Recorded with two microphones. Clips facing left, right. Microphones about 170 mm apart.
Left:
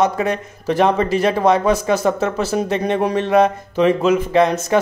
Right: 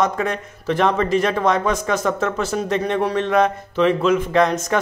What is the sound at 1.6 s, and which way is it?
Speech, 35° left (ahead or behind).